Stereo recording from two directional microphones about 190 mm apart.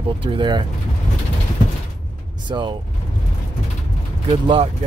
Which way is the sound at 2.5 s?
25° right (ahead or behind).